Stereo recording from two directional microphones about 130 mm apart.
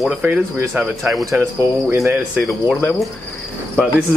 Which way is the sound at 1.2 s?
20° right (ahead or behind).